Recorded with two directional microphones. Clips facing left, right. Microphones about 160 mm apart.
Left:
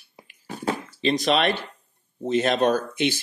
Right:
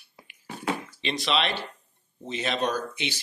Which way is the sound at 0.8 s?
40° left (ahead or behind).